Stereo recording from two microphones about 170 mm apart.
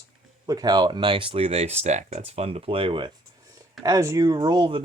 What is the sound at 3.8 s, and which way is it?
Speech, 20° right (ahead or behind).